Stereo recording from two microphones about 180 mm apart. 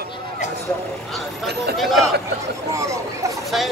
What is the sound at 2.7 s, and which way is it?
Speech, 15° right (ahead or behind).